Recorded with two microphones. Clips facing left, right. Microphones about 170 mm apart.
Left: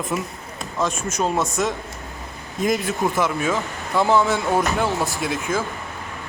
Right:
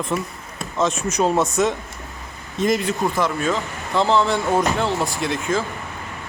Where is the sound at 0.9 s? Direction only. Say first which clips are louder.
Right 4 dB; 10° left (ahead or behind).